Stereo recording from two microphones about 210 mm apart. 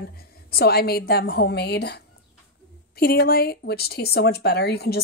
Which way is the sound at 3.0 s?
45° left (ahead or behind).